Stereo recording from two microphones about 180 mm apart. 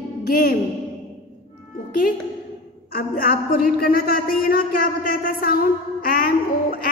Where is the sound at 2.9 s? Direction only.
55° left (ahead or behind).